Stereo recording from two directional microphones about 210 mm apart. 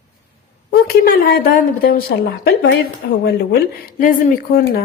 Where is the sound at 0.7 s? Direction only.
45° left (ahead or behind).